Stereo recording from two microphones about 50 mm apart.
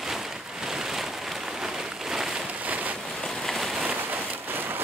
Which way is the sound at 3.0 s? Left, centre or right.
Centre.